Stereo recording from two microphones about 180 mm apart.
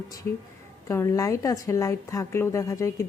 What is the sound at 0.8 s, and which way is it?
Speech, 15° left (ahead or behind).